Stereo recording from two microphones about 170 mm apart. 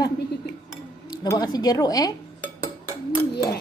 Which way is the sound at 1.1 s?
25° left (ahead or behind).